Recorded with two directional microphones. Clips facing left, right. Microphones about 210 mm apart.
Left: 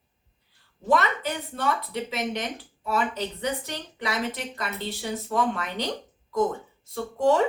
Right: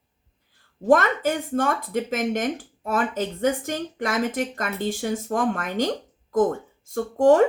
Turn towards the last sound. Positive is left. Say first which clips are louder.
# right 6 dB
turn(degrees=-50)  # may be behind; listen again after turning